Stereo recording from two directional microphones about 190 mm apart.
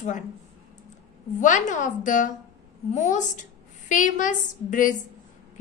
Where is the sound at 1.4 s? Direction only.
40° left (ahead or behind).